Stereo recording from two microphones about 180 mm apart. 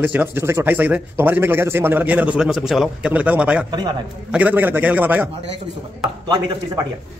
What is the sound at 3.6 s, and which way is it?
Speech, 25° right (ahead or behind).